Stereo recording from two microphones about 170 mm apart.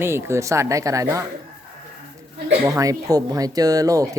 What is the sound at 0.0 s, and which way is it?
Speech, 15° right (ahead or behind).